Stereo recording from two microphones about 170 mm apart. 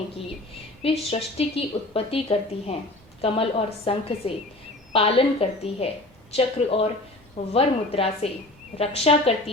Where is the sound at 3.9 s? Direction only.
35° left (ahead or behind).